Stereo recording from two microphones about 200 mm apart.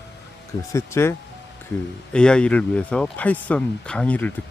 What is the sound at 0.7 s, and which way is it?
Speech, 15° left (ahead or behind).